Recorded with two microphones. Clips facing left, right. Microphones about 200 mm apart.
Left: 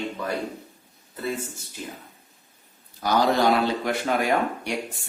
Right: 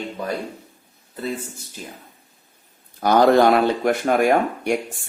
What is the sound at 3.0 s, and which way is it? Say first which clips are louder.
Speech: right 6 dB; 55° right (ahead or behind).